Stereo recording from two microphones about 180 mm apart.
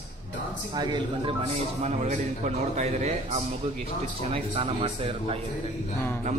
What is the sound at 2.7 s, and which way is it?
Speech, 35° right (ahead or behind).